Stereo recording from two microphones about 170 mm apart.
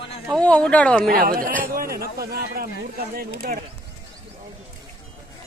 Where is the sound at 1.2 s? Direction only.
60° right (ahead or behind).